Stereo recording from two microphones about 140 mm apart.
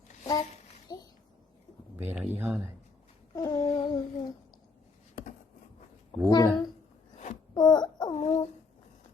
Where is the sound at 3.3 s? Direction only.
25° left (ahead or behind).